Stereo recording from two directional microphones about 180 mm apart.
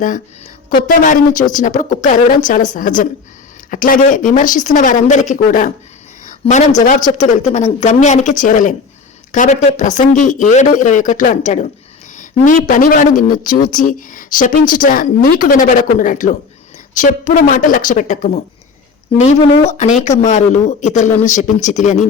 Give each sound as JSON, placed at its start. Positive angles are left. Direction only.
{"t": 0.7, "sound": "speech", "side_deg": 50}